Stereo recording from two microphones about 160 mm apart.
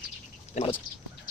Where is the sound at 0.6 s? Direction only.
45° left (ahead or behind).